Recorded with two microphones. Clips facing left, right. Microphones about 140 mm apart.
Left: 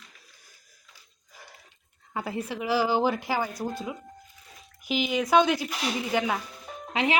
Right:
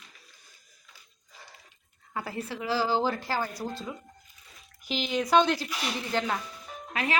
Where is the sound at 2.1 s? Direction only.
20° left (ahead or behind).